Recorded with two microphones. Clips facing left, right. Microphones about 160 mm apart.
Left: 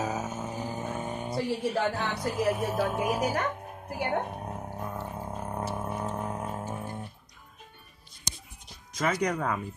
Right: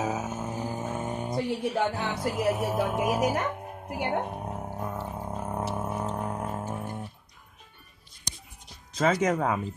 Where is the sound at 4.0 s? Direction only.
10° right (ahead or behind).